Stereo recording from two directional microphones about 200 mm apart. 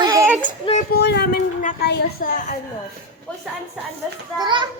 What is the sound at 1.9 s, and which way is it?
Speech, 50° left (ahead or behind).